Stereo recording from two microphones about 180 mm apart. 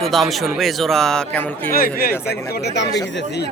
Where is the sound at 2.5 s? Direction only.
70° left (ahead or behind).